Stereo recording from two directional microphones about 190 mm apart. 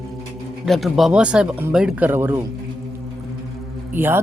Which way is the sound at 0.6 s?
Centre (ahead or behind).